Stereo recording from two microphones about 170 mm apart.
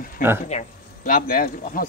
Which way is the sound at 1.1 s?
55° left (ahead or behind).